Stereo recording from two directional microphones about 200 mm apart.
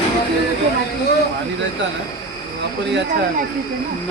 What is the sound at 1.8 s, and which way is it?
Speech, 65° right (ahead or behind).